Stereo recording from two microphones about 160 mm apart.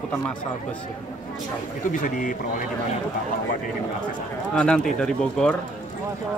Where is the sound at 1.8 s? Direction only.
55° left (ahead or behind).